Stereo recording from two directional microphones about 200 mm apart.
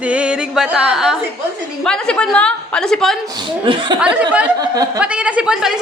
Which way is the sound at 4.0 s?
5° right (ahead or behind).